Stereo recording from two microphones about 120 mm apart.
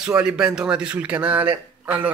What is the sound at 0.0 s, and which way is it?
Speech, 10° right (ahead or behind).